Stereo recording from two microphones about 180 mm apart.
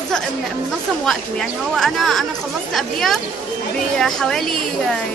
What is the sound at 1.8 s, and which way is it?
Speech, centre (ahead or behind).